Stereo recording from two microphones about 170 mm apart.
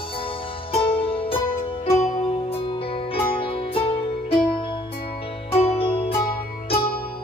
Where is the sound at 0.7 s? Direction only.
35° left (ahead or behind).